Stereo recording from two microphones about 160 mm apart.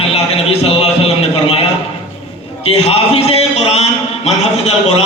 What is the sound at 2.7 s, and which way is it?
A man's voice, 40° left (ahead or behind).